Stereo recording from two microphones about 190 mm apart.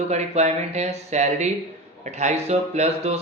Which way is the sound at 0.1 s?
35° right (ahead or behind).